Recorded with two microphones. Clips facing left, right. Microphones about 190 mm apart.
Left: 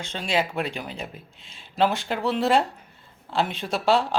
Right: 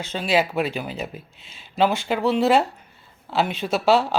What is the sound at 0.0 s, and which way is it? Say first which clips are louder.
Speech: right 4 dB; 5° right (ahead or behind).